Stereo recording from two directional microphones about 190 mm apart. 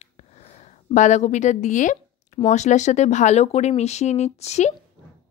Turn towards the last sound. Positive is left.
turn(degrees=35)  # may be behind; listen again after turning